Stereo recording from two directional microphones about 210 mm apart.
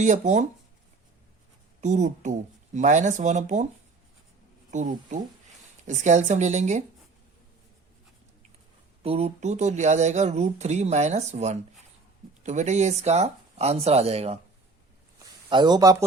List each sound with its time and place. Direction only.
0.0 s speech: 35° right (ahead or behind)
1.8 s speech: 35° right (ahead or behind)
4.7 s speech: 35° right (ahead or behind)
9.0 s speech: 30° right (ahead or behind)
15.4 s speech: 20° right (ahead or behind)